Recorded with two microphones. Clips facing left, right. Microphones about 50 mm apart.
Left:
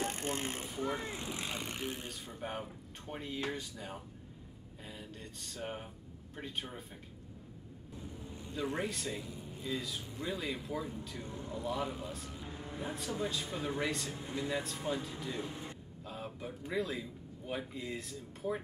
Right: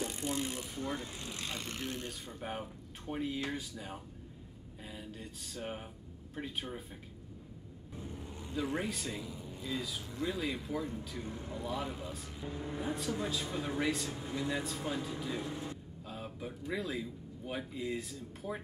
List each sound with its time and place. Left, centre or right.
0.0 s speech: left
0.7 s speech: centre
2.0 s speech: centre
8.5 s speech: centre
16.1 s a man's voice: centre